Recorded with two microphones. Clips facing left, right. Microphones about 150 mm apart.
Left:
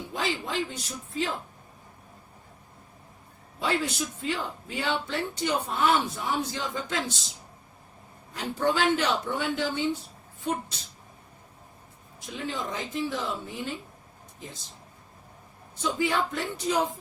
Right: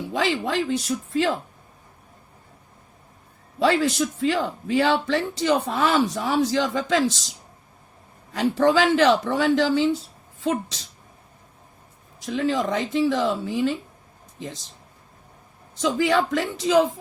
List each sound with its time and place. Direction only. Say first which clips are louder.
0.1 s speech: right 7 dB; 90° right
3.6 s speech: right 8 dB; 90° right
12.2 s speech: right 10 dB; 90° right
15.7 s speech: right 7 dB; 90° right